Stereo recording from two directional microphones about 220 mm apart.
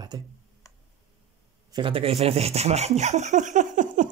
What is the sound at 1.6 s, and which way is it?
Speech, 20° right (ahead or behind).